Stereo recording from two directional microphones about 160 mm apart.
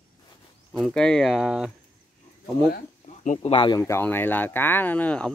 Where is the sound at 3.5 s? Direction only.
30° left (ahead or behind).